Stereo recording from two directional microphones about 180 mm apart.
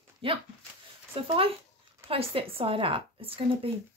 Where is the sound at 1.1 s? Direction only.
30° right (ahead or behind).